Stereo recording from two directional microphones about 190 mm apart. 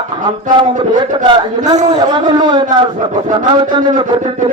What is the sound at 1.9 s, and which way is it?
Chant, 25° right (ahead or behind).